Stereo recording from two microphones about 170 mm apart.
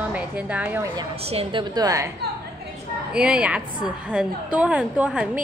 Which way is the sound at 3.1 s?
5° right (ahead or behind).